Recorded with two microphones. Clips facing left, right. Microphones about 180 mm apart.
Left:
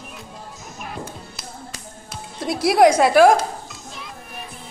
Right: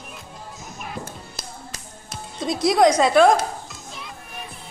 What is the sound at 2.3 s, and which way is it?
Children playing, 5° left (ahead or behind).